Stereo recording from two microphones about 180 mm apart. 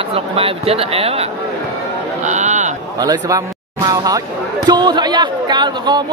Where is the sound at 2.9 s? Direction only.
20° right (ahead or behind).